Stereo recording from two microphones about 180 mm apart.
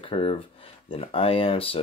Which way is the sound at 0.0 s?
30° left (ahead or behind).